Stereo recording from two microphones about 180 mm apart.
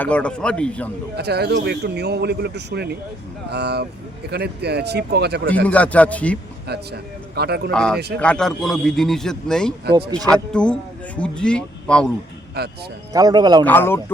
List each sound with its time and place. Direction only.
0.0 s speech: 5° left (ahead or behind)
1.1 s speech: 65° right (ahead or behind)
5.6 s speech: 10° left (ahead or behind)
6.7 s speech: 65° right (ahead or behind)
7.7 s a man's voice: 5° left (ahead or behind)
12.6 s speech: 60° right (ahead or behind)
13.1 s a man's voice: 20° right (ahead or behind)
13.7 s speech: 10° left (ahead or behind)